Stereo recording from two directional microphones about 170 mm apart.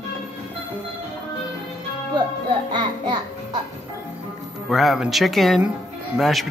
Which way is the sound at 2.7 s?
25° right (ahead or behind).